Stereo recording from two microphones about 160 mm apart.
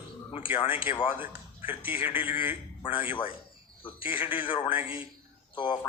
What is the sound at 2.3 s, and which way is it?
Speech, 15° right (ahead or behind).